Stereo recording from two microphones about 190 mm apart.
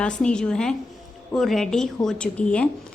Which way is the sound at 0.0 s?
5° left (ahead or behind).